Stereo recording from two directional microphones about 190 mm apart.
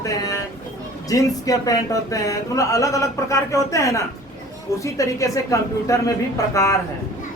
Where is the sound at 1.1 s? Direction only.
20° left (ahead or behind).